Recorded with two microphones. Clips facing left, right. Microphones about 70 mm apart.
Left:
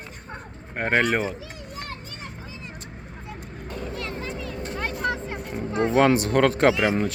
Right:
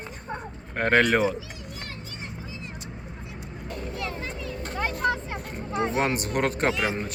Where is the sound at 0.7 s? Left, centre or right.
Centre.